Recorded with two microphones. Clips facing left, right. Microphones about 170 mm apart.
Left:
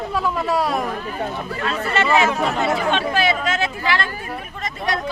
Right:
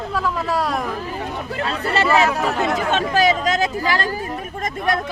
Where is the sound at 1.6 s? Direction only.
35° right (ahead or behind).